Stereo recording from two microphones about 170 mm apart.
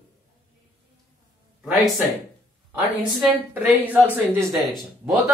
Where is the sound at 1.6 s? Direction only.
Centre (ahead or behind).